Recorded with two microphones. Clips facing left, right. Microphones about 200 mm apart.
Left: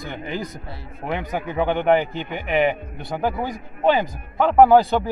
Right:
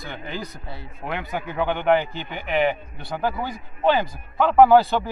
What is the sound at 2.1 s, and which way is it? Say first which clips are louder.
Speech: left 3 dB; 50° left (ahead or behind).